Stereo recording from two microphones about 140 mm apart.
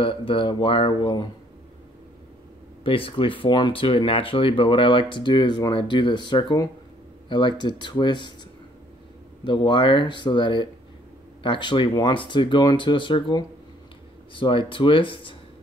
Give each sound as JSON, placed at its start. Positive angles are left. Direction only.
{"t": 0.0, "sound": "speech", "side_deg": 40}
{"t": 2.8, "sound": "speech", "side_deg": 40}
{"t": 9.4, "sound": "speech", "side_deg": 35}